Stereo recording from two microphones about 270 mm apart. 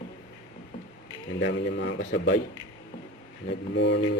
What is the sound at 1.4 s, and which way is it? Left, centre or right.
Speech, left.